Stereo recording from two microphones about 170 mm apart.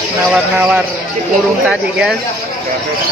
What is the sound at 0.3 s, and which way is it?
Speech, 10° right (ahead or behind).